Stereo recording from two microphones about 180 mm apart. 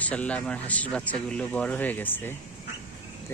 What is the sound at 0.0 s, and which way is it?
Speech, 10° left (ahead or behind).